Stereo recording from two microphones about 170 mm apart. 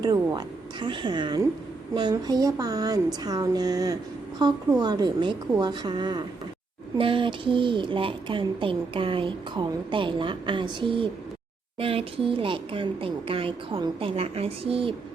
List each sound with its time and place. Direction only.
0.0 s speech: 25° right (ahead or behind)